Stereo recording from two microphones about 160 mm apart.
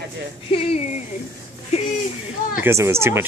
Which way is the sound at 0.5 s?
40° left (ahead or behind).